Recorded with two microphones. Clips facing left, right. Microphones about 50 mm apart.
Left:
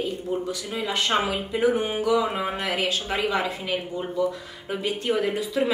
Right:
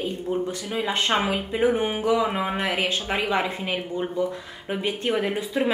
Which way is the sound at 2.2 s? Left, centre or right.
Centre.